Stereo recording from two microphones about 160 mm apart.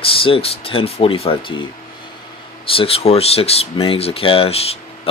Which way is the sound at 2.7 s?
35° left (ahead or behind).